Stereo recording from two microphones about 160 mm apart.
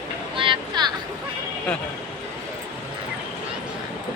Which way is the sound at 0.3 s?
30° right (ahead or behind).